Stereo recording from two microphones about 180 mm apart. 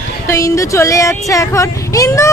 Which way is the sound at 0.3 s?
15° left (ahead or behind).